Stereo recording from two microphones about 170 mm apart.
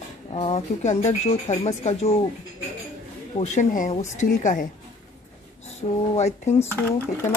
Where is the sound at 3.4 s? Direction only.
45° left (ahead or behind).